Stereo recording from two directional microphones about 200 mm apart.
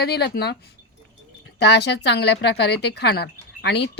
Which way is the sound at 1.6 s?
55° left (ahead or behind).